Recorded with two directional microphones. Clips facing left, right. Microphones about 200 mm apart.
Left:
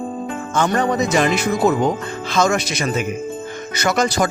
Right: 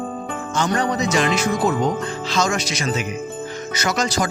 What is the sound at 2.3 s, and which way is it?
Speech, 55° left (ahead or behind).